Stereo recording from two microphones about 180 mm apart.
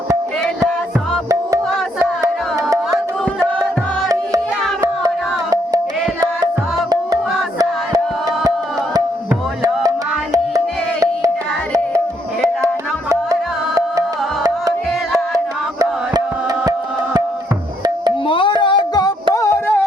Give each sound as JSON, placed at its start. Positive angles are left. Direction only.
{"t": 2.0, "sound": "music", "side_deg": -15}
{"t": 4.8, "sound": "music", "side_deg": -20}
{"t": 18.3, "sound": "music", "side_deg": 25}